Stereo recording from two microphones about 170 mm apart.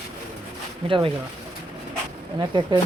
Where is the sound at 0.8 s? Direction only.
30° right (ahead or behind).